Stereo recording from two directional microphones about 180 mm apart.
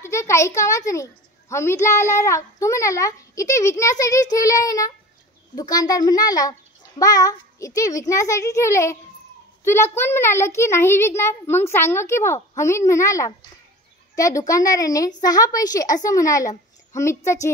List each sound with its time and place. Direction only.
0.0 s a child's voice: 15° left (ahead or behind)